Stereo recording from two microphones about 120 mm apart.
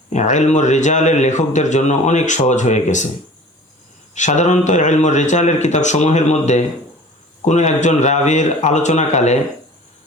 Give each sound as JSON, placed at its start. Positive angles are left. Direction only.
{"t": 0.1, "sound": "speech", "side_deg": 75}
{"t": 4.1, "sound": "speech", "side_deg": 80}